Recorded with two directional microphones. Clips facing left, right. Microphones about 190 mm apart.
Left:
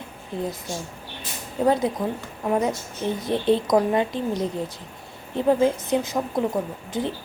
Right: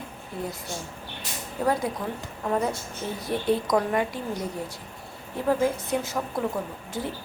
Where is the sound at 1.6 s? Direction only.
20° left (ahead or behind).